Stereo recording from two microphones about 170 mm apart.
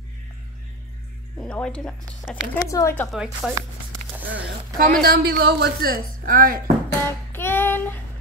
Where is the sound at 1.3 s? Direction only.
5° left (ahead or behind).